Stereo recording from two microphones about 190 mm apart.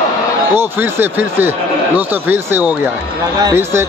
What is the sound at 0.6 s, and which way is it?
A man's voice, 10° right (ahead or behind).